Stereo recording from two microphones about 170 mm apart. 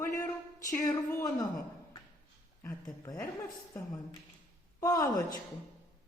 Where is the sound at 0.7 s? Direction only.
15° left (ahead or behind).